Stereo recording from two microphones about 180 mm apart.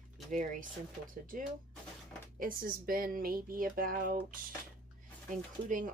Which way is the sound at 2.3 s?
50° right (ahead or behind).